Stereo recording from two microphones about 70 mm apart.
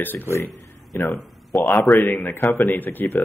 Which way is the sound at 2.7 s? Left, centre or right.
Left.